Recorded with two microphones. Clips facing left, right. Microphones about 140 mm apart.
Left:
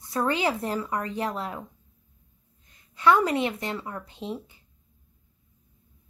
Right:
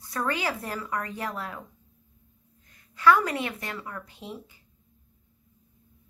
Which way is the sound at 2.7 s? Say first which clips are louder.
Even; 25° left (ahead or behind).